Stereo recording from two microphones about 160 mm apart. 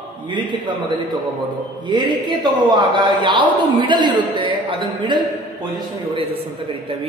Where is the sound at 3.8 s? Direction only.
30° right (ahead or behind).